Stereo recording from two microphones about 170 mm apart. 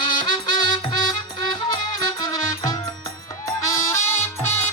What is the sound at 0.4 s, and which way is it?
Music, 25° left (ahead or behind).